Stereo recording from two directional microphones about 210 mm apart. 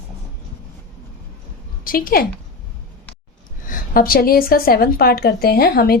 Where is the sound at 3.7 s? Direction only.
45° left (ahead or behind).